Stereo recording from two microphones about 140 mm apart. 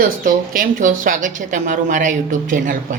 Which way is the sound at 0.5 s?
75° right (ahead or behind).